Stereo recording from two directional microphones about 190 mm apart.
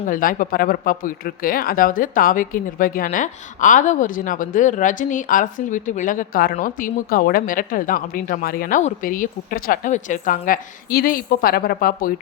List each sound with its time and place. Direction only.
0.1 s speech: 45° left (ahead or behind)